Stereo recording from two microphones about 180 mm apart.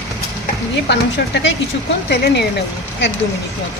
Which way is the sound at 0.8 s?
75° left (ahead or behind).